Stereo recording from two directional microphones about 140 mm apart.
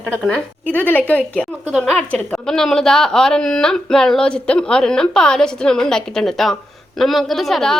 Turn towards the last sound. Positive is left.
turn(degrees=0)  # may be behind; listen again after turning